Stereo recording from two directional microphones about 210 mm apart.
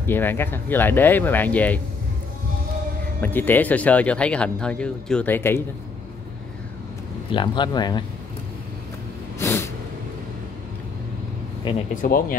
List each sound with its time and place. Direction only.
0.0 s speech: 10° left (ahead or behind)
3.2 s speech: 10° left (ahead or behind)
7.3 s speech: 20° left (ahead or behind)
9.4 s vehicle: 10° left (ahead or behind)
11.9 s speech: 40° left (ahead or behind)